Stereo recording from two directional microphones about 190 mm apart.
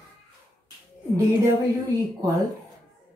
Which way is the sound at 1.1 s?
15° right (ahead or behind).